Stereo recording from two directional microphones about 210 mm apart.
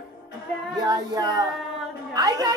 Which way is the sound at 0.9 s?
15° right (ahead or behind).